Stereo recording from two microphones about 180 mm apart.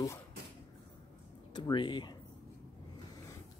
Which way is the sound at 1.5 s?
25° left (ahead or behind).